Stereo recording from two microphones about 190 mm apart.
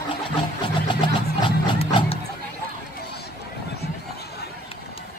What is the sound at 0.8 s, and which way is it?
Vehicle, 25° left (ahead or behind).